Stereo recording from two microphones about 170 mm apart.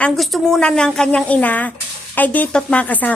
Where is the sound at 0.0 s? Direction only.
Centre (ahead or behind).